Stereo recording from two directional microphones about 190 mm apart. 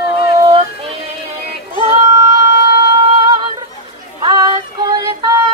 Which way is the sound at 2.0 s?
20° right (ahead or behind).